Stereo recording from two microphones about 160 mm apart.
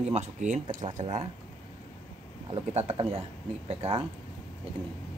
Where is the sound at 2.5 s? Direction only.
40° right (ahead or behind).